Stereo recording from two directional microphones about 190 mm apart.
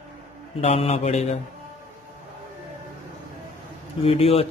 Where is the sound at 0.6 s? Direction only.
30° left (ahead or behind).